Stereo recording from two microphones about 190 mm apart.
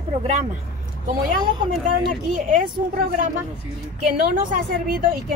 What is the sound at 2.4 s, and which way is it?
Speech, 45° right (ahead or behind).